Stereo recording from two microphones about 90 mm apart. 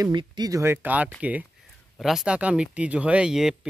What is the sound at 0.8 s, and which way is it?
Speech, 15° right (ahead or behind).